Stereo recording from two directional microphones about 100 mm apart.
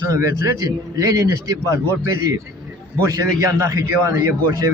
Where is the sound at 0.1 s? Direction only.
35° right (ahead or behind).